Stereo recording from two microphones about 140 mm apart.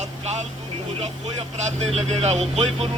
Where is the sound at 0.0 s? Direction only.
55° right (ahead or behind).